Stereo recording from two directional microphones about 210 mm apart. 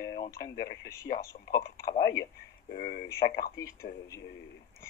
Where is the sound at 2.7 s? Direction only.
45° left (ahead or behind).